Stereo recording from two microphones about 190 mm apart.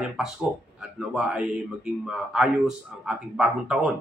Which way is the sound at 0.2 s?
Centre (ahead or behind).